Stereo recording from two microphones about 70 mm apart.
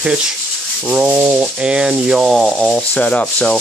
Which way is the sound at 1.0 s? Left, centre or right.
Right.